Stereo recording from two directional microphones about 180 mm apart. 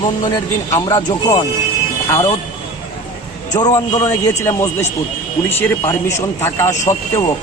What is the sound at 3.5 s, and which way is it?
A man's voice, 20° left (ahead or behind).